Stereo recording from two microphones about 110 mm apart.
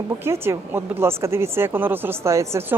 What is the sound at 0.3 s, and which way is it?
Speech, 25° right (ahead or behind).